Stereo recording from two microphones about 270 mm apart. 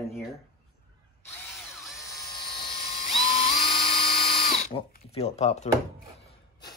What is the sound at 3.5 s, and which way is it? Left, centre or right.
Drill, centre.